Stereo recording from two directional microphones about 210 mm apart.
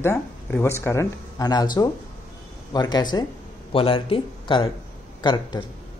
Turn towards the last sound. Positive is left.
turn(degrees=20)  # may be behind; listen again after turning